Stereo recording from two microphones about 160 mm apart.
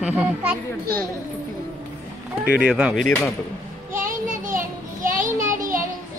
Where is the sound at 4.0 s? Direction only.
55° right (ahead or behind).